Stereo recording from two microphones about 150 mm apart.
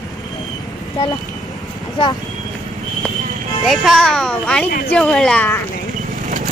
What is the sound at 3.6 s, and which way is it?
Speech, centre (ahead or behind).